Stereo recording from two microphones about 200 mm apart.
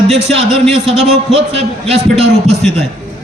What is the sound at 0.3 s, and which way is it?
Speech, centre (ahead or behind).